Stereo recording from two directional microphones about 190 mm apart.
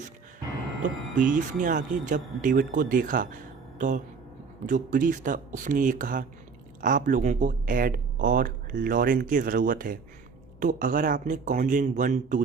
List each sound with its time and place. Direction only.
1.3 s speech: 45° right (ahead or behind)